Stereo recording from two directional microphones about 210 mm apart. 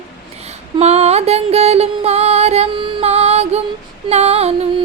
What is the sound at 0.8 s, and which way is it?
Music, 30° right (ahead or behind).